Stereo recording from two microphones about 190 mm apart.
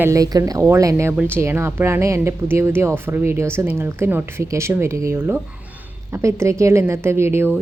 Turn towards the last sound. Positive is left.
turn(degrees=-10)  # may be behind; listen again after turning